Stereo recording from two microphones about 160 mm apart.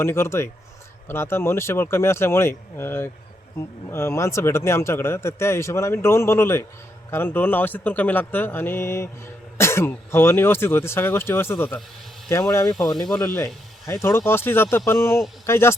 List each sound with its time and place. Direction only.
0.0 s speech: 15° left (ahead or behind)